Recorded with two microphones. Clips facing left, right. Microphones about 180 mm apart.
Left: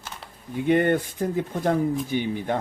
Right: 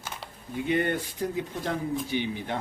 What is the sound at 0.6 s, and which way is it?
Speech, 50° left (ahead or behind).